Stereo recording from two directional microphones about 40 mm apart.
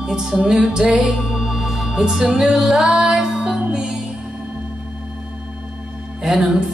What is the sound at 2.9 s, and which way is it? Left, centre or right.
Music, centre.